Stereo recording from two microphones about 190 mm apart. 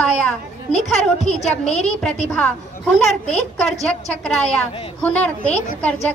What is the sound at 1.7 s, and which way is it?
Speech, 35° left (ahead or behind).